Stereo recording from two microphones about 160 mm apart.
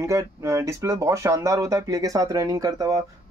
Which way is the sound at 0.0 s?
20° right (ahead or behind).